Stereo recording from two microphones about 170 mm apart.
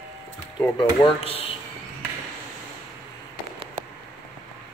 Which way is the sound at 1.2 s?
35° left (ahead or behind).